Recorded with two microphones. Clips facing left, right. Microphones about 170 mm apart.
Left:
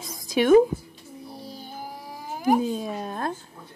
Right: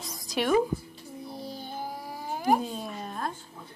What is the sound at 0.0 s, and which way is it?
Music, 55° left (ahead or behind).